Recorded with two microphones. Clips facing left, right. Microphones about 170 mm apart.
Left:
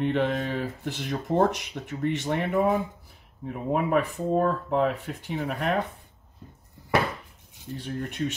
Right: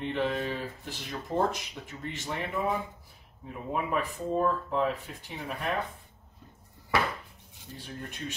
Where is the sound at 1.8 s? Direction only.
55° left (ahead or behind).